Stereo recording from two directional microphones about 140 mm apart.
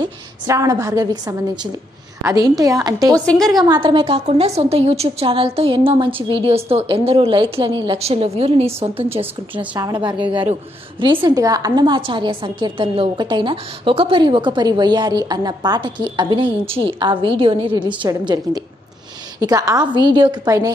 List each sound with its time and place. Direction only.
0.0 s a woman's voice: 25° right (ahead or behind)
3.3 s a woman's voice: centre (ahead or behind)
3.6 s a woman's voice: 35° right (ahead or behind)